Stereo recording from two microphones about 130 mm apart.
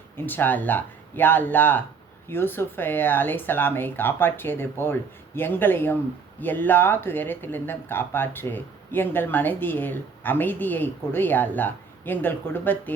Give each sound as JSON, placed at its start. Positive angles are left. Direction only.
{"t": 0.3, "sound": "speech", "side_deg": 15}